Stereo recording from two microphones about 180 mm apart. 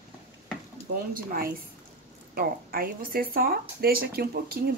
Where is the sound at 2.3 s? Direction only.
55° right (ahead or behind).